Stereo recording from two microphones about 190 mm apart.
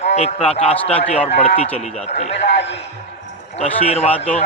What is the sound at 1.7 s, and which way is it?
Speech, 35° left (ahead or behind).